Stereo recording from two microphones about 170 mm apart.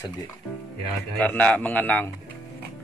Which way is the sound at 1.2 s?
10° left (ahead or behind).